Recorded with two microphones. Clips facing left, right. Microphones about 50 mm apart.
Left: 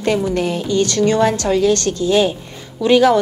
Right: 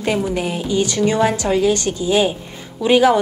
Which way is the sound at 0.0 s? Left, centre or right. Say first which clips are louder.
Left 2 dB; centre.